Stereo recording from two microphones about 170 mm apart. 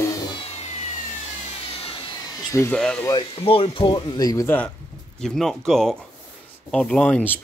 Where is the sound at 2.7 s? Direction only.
5° left (ahead or behind).